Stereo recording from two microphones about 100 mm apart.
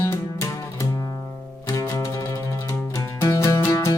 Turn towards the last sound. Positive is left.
turn(degrees=40)  # may be behind; listen again after turning